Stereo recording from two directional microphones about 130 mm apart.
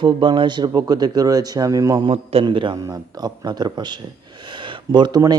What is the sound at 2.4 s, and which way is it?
A man's voice, 40° right (ahead or behind).